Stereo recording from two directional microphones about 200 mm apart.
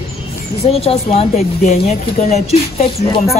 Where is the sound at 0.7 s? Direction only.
30° left (ahead or behind).